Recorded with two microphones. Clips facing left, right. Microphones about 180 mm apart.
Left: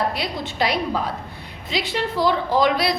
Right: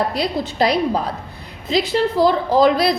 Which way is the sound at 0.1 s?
40° right (ahead or behind).